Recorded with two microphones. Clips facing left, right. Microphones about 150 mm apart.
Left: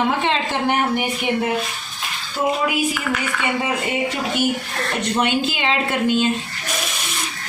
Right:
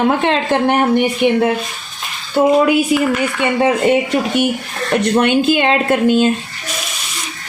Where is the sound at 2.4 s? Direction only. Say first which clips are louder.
Right 9 dB; 80° right.